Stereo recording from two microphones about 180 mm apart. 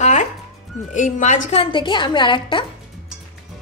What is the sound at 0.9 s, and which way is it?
Speech, 45° left (ahead or behind).